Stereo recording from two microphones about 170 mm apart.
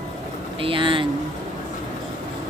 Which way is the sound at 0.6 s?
30° right (ahead or behind).